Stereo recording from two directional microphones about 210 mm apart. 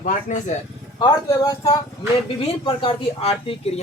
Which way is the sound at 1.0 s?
15° left (ahead or behind).